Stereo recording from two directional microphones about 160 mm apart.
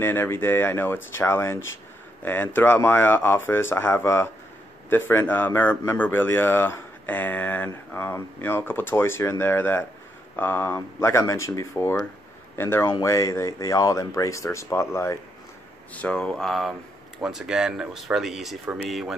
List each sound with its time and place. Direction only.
0.0 s a man's voice: 15° left (ahead or behind); by 19.1 s centre (ahead or behind)